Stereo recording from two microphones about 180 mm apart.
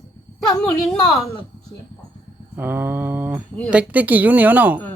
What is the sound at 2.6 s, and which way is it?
A woman's voice, 10° right (ahead or behind).